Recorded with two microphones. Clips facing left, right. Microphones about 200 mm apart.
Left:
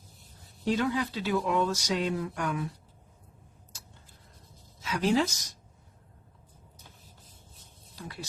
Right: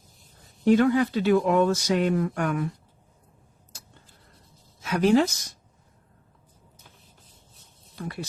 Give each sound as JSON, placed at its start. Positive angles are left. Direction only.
{"t": 0.6, "sound": "speech", "side_deg": -60}
{"t": 4.8, "sound": "speech", "side_deg": -55}
{"t": 8.0, "sound": "speech", "side_deg": -55}